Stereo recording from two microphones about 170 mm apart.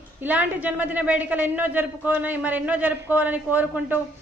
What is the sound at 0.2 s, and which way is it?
A woman's voice, 10° right (ahead or behind).